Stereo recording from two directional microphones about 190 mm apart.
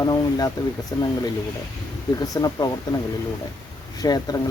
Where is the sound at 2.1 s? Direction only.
20° left (ahead or behind).